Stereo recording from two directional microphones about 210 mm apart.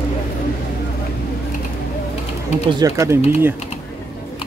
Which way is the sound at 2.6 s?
15° right (ahead or behind).